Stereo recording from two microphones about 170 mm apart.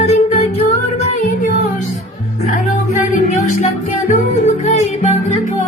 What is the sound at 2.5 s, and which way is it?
Music, 50° left (ahead or behind).